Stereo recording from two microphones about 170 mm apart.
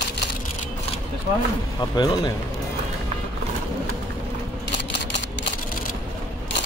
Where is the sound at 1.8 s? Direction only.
25° left (ahead or behind).